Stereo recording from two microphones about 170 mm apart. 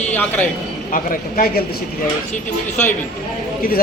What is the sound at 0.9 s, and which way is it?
Speech, 50° left (ahead or behind).